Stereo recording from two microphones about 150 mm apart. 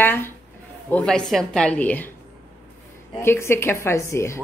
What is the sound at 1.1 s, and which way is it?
A woman's voice, 5° left (ahead or behind).